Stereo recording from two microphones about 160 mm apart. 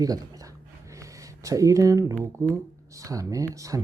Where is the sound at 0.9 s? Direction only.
20° right (ahead or behind).